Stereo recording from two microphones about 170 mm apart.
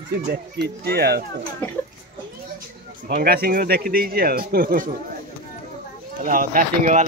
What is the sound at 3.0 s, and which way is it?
Speech, 60° right (ahead or behind).